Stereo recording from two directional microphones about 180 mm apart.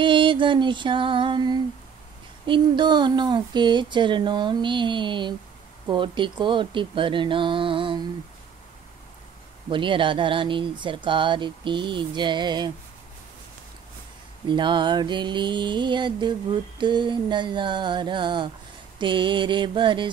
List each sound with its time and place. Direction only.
0.0 s mantra: 25° right (ahead or behind)
9.7 s mantra: 30° right (ahead or behind)
14.5 s mantra: 25° right (ahead or behind)